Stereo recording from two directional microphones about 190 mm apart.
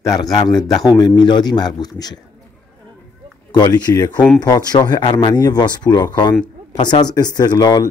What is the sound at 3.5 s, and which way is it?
A man's voice, 20° left (ahead or behind).